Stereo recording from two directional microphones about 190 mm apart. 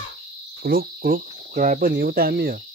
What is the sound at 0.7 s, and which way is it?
Cricket, 50° right (ahead or behind).